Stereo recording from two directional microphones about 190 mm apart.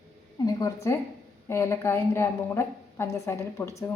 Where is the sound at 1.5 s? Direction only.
15° left (ahead or behind).